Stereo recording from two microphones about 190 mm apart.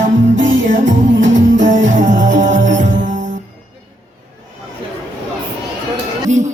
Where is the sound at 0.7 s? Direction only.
40° right (ahead or behind).